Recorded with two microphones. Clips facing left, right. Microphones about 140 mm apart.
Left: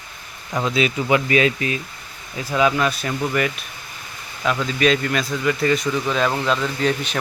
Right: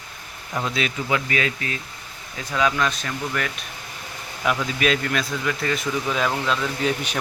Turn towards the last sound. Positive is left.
turn(degrees=-5)  # may be behind; listen again after turning